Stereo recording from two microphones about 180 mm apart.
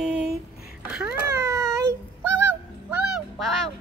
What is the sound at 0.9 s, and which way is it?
Speech, 5° right (ahead or behind).